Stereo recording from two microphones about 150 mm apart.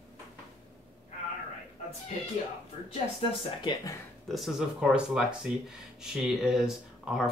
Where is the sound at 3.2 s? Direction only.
35° left (ahead or behind).